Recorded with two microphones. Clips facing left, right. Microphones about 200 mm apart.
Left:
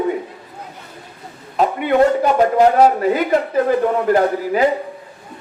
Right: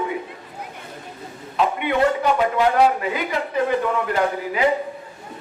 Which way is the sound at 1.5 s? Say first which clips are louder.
Left 5 dB; 45° left (ahead or behind).